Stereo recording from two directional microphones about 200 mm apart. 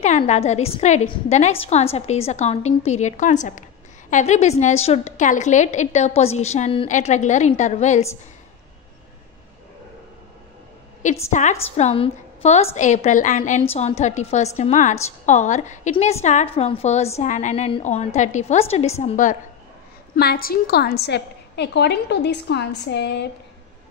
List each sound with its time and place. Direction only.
0.0 s a woman's voice: 35° left (ahead or behind)
11.2 s a woman's voice: 35° left (ahead or behind)
20.2 s a woman's voice: 50° left (ahead or behind)